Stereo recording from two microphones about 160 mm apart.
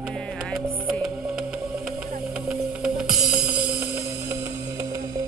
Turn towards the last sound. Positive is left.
turn(degrees=-5)  # may be behind; listen again after turning